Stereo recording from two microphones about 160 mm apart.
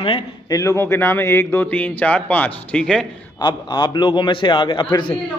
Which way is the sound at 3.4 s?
30° left (ahead or behind).